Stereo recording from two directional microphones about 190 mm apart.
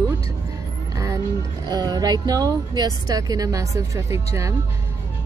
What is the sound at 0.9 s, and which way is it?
Music, 15° right (ahead or behind).